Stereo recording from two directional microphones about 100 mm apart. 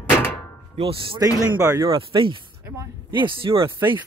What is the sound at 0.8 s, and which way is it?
Speech, 65° right (ahead or behind).